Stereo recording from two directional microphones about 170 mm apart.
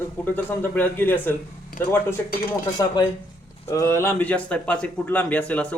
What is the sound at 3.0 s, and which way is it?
A man's voice, 25° left (ahead or behind).